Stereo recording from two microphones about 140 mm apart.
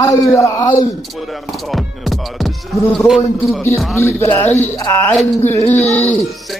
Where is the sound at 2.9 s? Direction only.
Centre (ahead or behind).